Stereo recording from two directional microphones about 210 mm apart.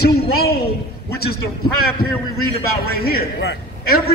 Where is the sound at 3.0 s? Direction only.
50° left (ahead or behind).